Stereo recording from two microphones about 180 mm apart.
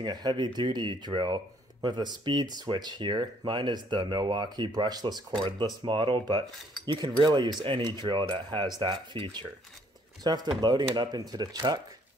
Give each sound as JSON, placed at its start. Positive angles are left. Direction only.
{"t": 0.0, "sound": "speech", "side_deg": -25}